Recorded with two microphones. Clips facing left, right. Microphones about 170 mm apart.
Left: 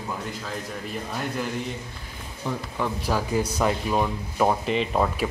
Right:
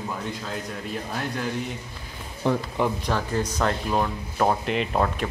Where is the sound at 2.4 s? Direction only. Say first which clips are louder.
Right 7 dB; 70° right (ahead or behind).